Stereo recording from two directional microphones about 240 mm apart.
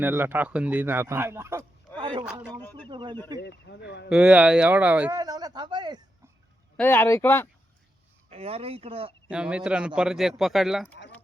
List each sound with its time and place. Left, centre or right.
0.0 s a man's voice: centre
2.0 s a sound: centre
2.6 s a sound: centre
2.9 s a sound: centre
3.4 s speech: left
4.1 s a man's voice: centre
6.7 s speech: centre
8.3 s speech: right
9.3 s a man's voice: centre